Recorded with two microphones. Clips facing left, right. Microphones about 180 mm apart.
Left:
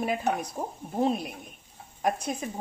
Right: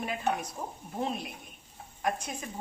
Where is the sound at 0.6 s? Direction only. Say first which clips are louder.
Left 5 dB; 25° left (ahead or behind).